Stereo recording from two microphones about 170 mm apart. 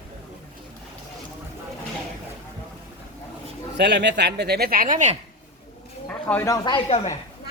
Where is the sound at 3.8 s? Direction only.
85° right; by 5.1 s 50° right (ahead or behind).